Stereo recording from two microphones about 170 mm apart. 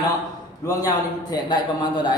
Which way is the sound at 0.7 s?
20° left (ahead or behind).